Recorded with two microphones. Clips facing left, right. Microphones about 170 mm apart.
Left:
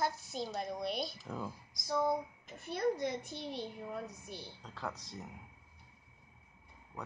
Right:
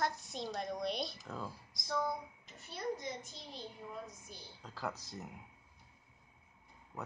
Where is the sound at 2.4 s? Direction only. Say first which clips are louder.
Left 6 dB; 60° left (ahead or behind).